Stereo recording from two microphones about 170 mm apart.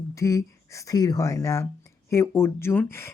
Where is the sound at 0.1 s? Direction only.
20° left (ahead or behind).